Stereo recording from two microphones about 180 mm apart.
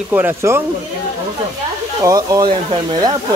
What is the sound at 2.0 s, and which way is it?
Speech, 20° right (ahead or behind).